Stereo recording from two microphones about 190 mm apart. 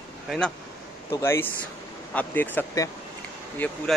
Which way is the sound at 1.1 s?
15° left (ahead or behind).